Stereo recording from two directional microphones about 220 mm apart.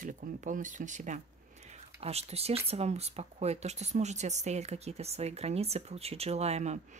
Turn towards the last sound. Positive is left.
turn(degrees=-30)  # may be behind; listen again after turning